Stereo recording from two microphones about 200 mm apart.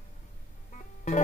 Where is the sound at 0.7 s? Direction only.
40° left (ahead or behind).